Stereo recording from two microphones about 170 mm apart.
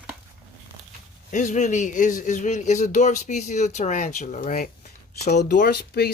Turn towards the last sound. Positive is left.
turn(degrees=65)  # may be behind; listen again after turning